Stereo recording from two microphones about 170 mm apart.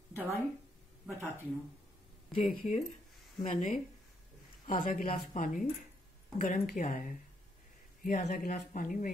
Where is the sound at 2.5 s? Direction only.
55° left (ahead or behind).